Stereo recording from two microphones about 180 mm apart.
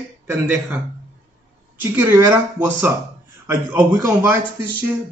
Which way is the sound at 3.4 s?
10° right (ahead or behind).